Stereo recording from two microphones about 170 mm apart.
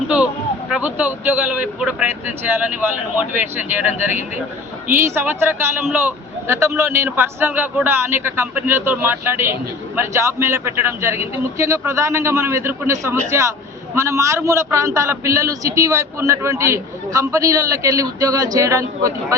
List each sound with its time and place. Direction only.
0.7 s a man's voice: 10° right (ahead or behind)